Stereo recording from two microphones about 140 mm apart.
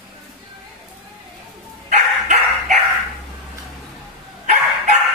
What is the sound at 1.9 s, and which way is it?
Dog, 60° right (ahead or behind).